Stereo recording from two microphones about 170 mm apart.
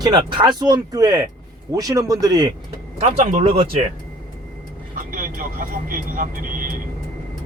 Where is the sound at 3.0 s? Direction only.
40° right (ahead or behind).